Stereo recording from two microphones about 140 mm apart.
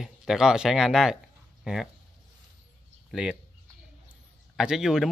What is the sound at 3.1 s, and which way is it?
Speech, 5° right (ahead or behind).